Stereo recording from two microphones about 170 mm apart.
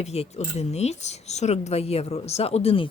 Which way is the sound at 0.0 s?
40° left (ahead or behind).